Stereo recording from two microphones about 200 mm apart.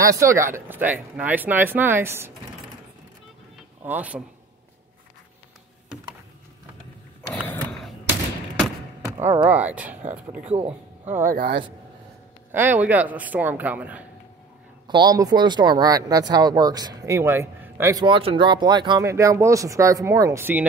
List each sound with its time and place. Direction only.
0.0 s speech: 15° right (ahead or behind)
3.8 s speech: 5° right (ahead or behind)
7.3 s mechanisms: 5° left (ahead or behind)
9.4 s speech: 5° right (ahead or behind)
11.2 s speech: 50° right (ahead or behind)
12.5 s speech: 10° right (ahead or behind)
14.9 s speech: 20° right (ahead or behind)